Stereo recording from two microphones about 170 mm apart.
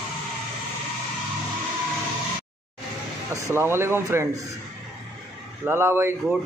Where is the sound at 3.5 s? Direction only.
15° right (ahead or behind).